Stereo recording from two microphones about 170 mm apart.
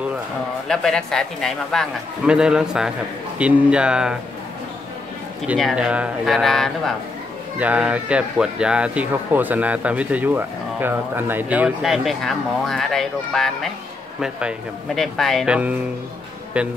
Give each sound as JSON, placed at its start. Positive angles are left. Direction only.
{"t": 0.7, "sound": "a man's voice", "side_deg": 5}
{"t": 5.5, "sound": "a man's voice", "side_deg": -5}
{"t": 15.0, "sound": "a man's voice", "side_deg": 0}